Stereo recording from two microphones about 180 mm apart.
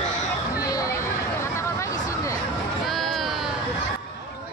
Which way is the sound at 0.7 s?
20° left (ahead or behind).